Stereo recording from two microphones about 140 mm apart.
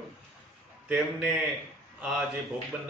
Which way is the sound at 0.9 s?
5° right (ahead or behind).